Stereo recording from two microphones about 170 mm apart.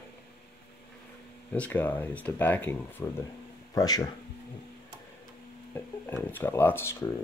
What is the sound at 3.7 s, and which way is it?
Speech, 20° left (ahead or behind).